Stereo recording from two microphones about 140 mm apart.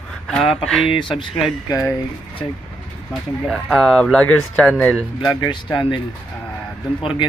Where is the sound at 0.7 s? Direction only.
5° left (ahead or behind).